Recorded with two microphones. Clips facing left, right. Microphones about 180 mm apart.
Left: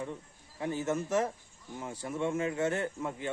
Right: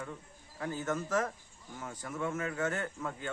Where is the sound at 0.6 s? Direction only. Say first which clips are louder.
Left 3 dB; 25° left (ahead or behind).